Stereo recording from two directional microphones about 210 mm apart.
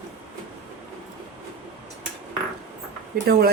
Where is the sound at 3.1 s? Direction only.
45° right (ahead or behind).